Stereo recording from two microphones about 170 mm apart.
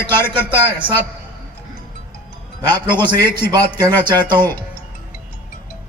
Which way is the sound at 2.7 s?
10° left (ahead or behind).